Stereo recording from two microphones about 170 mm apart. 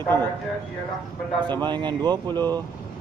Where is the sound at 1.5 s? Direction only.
25° right (ahead or behind).